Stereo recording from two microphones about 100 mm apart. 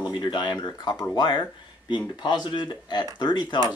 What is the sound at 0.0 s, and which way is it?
Speech, 45° left (ahead or behind).